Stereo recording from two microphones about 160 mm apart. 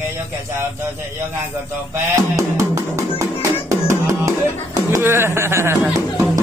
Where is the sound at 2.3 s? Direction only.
20° right (ahead or behind).